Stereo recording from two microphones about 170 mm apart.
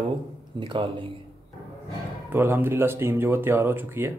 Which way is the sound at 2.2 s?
15° right (ahead or behind).